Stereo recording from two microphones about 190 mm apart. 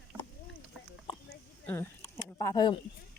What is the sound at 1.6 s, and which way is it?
Speech, 10° left (ahead or behind).